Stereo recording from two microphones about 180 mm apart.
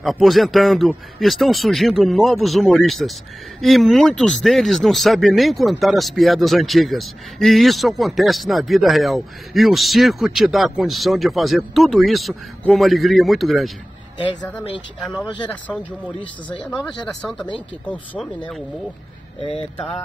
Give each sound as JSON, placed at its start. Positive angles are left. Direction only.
{"t": 0.0, "sound": "speech", "side_deg": 0}
{"t": 14.1, "sound": "speech", "side_deg": 25}
{"t": 15.7, "sound": "speech", "side_deg": 10}